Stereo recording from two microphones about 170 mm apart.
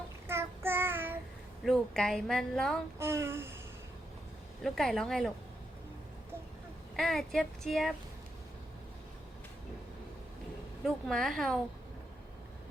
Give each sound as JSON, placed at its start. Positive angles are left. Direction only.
{"t": 0.3, "sound": "child singing", "side_deg": -15}
{"t": 1.6, "sound": "a woman's voice", "side_deg": 0}
{"t": 3.0, "sound": "speech", "side_deg": -15}
{"t": 4.6, "sound": "a woman's voice", "side_deg": 0}
{"t": 6.9, "sound": "a woman's voice", "side_deg": 0}
{"t": 10.8, "sound": "a woman's voice", "side_deg": 0}